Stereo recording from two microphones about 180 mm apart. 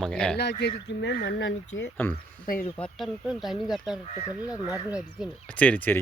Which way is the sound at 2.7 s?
5° left (ahead or behind).